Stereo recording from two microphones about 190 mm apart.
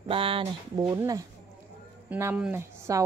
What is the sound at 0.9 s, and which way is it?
A woman's voice, 15° right (ahead or behind).